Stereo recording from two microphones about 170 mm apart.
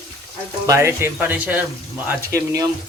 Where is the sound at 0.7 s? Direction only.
15° right (ahead or behind).